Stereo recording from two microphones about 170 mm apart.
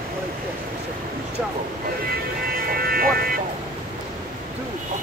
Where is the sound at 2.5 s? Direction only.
60° right (ahead or behind).